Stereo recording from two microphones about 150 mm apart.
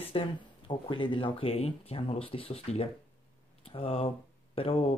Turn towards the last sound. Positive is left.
turn(degrees=40)  # may be behind; listen again after turning